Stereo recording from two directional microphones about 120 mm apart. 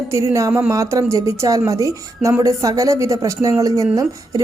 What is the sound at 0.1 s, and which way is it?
Speech, 25° right (ahead or behind).